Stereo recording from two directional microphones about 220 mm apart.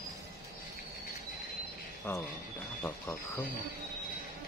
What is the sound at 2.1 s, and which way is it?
Speech, 15° left (ahead or behind).